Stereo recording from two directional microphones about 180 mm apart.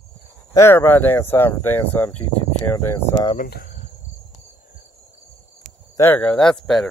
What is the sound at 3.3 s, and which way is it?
Speech, 55° left (ahead or behind).